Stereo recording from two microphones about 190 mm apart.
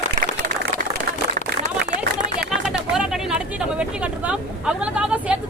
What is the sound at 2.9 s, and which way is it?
Speech, 5° right (ahead or behind).